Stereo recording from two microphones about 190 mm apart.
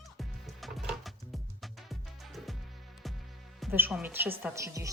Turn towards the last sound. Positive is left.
turn(degrees=-15)  # may be behind; listen again after turning